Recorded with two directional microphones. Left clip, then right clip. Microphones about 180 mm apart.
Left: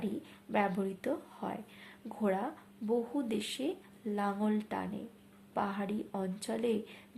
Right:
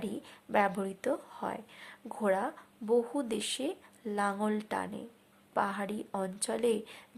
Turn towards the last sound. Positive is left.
turn(degrees=-30)  # may be behind; listen again after turning